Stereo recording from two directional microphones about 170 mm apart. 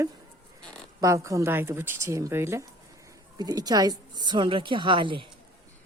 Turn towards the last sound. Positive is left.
turn(degrees=-30)  # may be behind; listen again after turning